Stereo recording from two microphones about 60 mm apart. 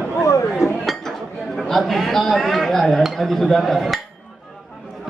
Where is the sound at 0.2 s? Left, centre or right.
Left.